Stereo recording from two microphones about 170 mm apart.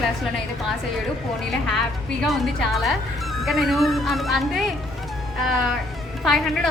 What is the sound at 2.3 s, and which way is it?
Speech, centre (ahead or behind).